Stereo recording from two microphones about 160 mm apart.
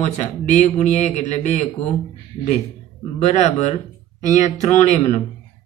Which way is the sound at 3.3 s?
50° left (ahead or behind).